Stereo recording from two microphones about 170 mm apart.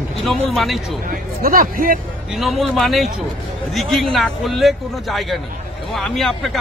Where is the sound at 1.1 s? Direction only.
55° right (ahead or behind).